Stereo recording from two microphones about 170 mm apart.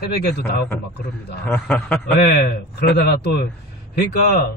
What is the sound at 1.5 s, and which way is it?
Speech, 5° left (ahead or behind).